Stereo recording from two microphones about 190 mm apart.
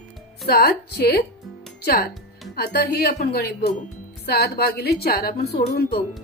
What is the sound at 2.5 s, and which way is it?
A woman's voice, 55° left (ahead or behind).